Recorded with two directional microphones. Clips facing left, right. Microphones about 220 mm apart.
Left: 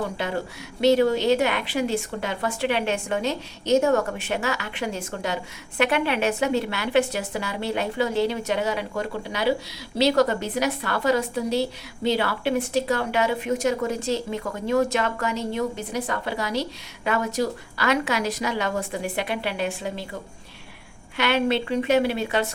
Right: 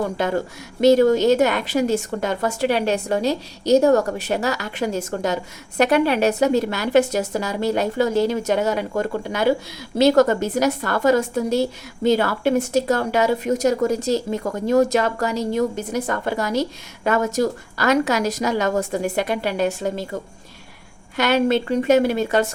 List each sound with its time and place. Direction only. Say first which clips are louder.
0.2 s a woman's voice: right 6 dB; 45° right (ahead or behind)
21.2 s a woman's voice: right 4 dB; 45° right (ahead or behind)